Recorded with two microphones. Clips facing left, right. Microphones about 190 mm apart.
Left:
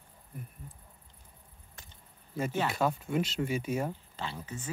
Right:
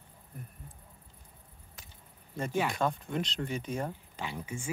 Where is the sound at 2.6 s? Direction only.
5° left (ahead or behind).